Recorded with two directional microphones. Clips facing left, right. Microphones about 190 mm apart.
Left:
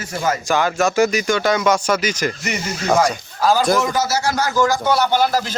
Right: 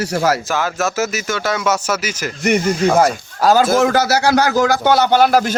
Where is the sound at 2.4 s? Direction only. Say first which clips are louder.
Right 10 dB; 55° right (ahead or behind).